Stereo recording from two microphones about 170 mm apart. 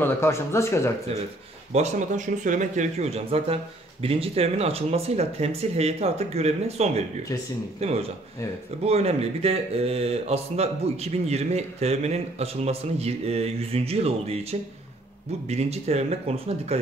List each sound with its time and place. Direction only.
0.0 s speech: 15° left (ahead or behind)
1.7 s speech: 45° right (ahead or behind)